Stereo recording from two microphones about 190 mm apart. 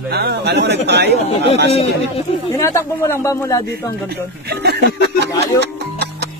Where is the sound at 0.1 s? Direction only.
55° right (ahead or behind).